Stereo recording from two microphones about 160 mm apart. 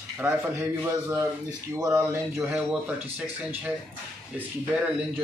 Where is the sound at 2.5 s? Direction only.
5° right (ahead or behind).